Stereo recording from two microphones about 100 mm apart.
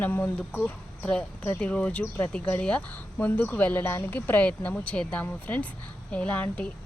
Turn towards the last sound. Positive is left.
turn(degrees=15)  # may be behind; listen again after turning